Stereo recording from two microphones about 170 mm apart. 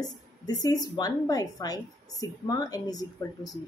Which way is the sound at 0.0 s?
20° left (ahead or behind).